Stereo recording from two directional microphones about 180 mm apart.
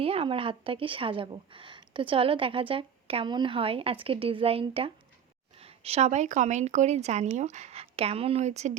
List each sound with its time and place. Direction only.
0.0 s a woman's voice: 30° right (ahead or behind)